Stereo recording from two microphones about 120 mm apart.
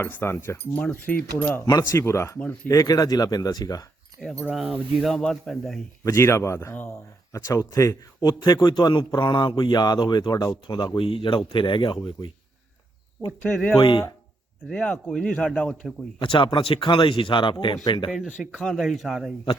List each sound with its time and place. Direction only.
0.0 s speech: 20° left (ahead or behind)
1.6 s speech: 30° left (ahead or behind)
4.2 s speech: 5° left (ahead or behind)
6.1 s speech: 25° left (ahead or behind); by 12.3 s 45° left (ahead or behind)
13.4 s speech: 10° left (ahead or behind)
13.7 s speech: 45° left (ahead or behind)
14.7 s speech: 5° left (ahead or behind)
16.2 s speech: 45° left (ahead or behind)
18.6 s speech: centre (ahead or behind)